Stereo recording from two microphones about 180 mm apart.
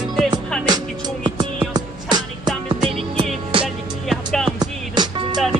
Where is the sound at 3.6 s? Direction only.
Centre (ahead or behind).